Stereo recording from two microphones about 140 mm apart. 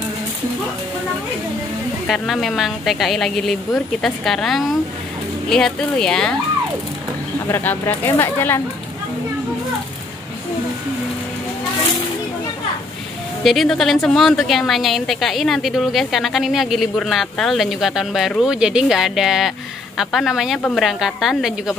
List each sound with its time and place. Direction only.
2.0 s a woman's voice: centre (ahead or behind)
7.4 s speech: 15° left (ahead or behind)
13.4 s a woman's voice: centre (ahead or behind)